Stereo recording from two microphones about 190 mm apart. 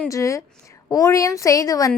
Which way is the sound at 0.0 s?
15° left (ahead or behind).